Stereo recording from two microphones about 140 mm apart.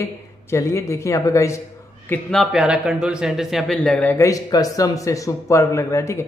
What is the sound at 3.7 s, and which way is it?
Speech, 10° left (ahead or behind).